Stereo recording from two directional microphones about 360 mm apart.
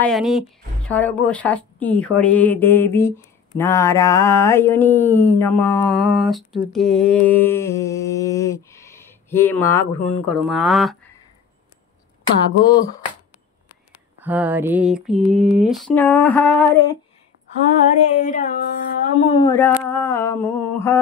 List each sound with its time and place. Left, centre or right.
0.0 s a woman's voice: centre
3.5 s mantra: centre
12.6 s mantra: centre
14.2 s a woman's voice: centre
15.1 s a sound: centre
15.7 s a woman's voice: centre
18.1 s speech: left
19.7 s mantra: centre